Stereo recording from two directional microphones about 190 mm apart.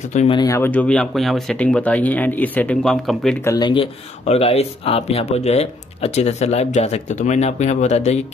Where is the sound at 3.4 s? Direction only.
20° left (ahead or behind).